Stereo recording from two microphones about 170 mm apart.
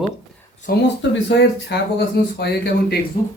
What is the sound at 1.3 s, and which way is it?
Speech, 85° left.